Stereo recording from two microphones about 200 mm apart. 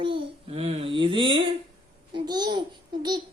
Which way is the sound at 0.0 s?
25° right (ahead or behind).